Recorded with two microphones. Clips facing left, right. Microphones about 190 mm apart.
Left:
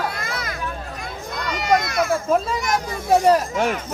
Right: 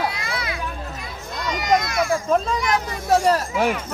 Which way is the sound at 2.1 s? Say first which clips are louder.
Right 1 dB; 5° left (ahead or behind).